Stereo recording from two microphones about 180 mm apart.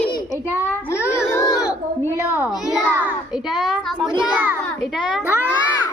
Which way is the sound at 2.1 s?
10° right (ahead or behind).